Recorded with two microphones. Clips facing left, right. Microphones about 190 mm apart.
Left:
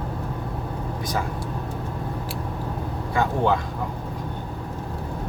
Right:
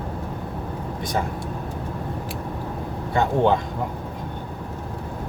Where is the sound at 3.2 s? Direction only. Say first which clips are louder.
Right 3 dB; 25° right (ahead or behind).